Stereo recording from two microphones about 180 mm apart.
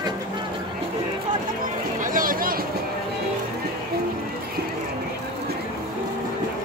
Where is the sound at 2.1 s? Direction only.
50° right (ahead or behind).